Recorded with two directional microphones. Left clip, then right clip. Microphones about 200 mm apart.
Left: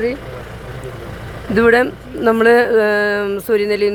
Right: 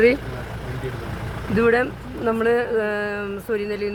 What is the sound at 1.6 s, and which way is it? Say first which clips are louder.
Speech: left 6 dB; 35° left (ahead or behind).